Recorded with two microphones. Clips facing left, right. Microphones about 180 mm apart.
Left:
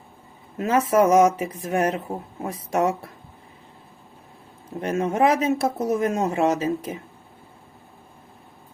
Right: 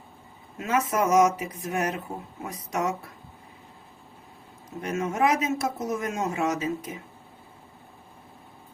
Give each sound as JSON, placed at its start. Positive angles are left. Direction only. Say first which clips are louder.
{"t": 0.6, "sound": "speech", "louder": "left 6 dB", "side_deg": 30}
{"t": 4.8, "sound": "speech", "louder": "left 4 dB", "side_deg": 30}